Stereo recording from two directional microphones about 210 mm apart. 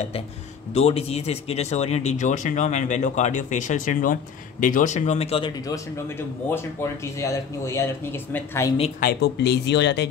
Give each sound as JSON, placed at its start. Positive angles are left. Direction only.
{"t": 0.7, "sound": "speech", "side_deg": 30}
{"t": 5.7, "sound": "speech", "side_deg": 10}
{"t": 9.0, "sound": "speech", "side_deg": 50}